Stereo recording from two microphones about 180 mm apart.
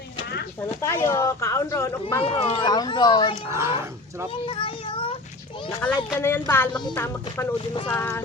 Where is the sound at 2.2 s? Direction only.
30° left (ahead or behind).